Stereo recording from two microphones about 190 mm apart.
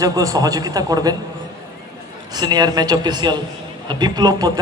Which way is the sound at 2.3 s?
20° right (ahead or behind).